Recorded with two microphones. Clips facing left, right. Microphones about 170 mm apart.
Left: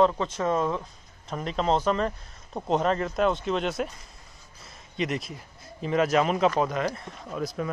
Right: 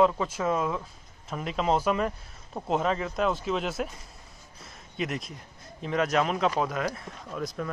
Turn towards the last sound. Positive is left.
turn(degrees=5)  # may be behind; listen again after turning